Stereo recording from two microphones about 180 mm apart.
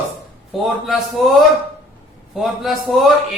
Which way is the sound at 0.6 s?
Centre (ahead or behind).